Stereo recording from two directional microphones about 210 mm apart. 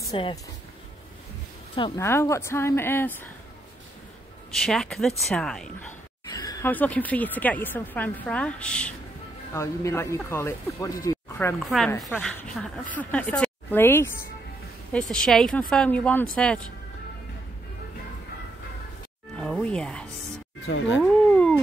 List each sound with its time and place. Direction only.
0.1 s speech: 25° left (ahead or behind)
1.8 s speech: 10° left (ahead or behind)
4.5 s speech: centre (ahead or behind)
6.3 s speech: 15° left (ahead or behind)
11.1 s a sound: 10° left (ahead or behind)
11.6 s speech: centre (ahead or behind)
19.3 s music: 5° left (ahead or behind)
20.6 s speech: 65° left (ahead or behind)
21.0 s a sound: 5° left (ahead or behind)